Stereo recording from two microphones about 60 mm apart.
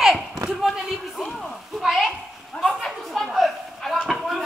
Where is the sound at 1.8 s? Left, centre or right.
Centre.